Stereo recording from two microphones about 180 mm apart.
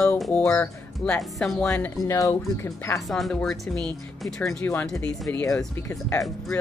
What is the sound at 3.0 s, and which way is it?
A woman's voice, centre (ahead or behind).